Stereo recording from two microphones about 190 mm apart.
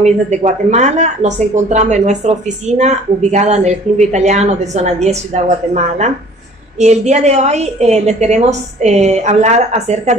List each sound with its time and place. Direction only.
0.0 s speech: 35° right (ahead or behind)
6.8 s speech: 35° right (ahead or behind)